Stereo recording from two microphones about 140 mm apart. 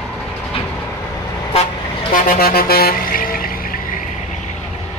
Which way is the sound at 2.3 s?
90° left.